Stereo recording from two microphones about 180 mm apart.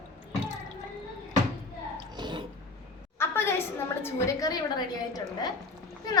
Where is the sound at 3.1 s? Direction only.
15° left (ahead or behind).